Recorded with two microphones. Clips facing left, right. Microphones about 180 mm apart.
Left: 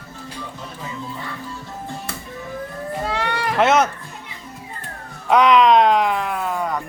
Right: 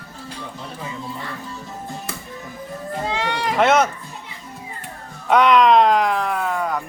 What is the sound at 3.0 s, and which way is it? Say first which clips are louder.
Livestock: even; 15° right (ahead or behind).